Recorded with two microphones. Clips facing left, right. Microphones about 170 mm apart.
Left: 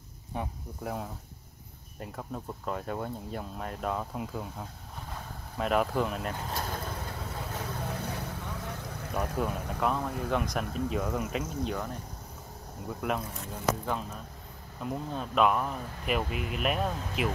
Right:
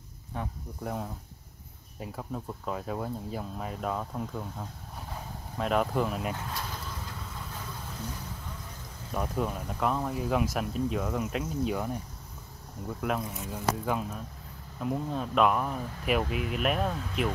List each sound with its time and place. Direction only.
0.3 s speech: 15° left (ahead or behind)
0.8 s speech: centre (ahead or behind)
6.5 s vehicle: 55° left (ahead or behind); by 9.1 s 70° left (ahead or behind)
9.1 s speech: centre (ahead or behind)
13.0 s speech: centre (ahead or behind)
14.8 s speech: centre (ahead or behind)